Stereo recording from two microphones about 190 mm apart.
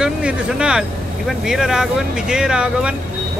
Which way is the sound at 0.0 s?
5° right (ahead or behind).